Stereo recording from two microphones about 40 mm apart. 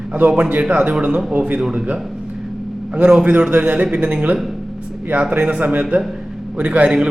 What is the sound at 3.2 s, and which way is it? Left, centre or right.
A man's voice, right.